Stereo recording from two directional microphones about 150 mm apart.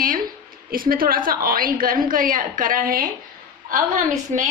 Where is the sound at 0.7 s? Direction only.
75° right (ahead or behind); by 4.5 s 55° right (ahead or behind).